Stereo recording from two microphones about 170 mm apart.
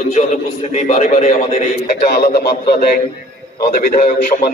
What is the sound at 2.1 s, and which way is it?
A man's voice, 65° left (ahead or behind).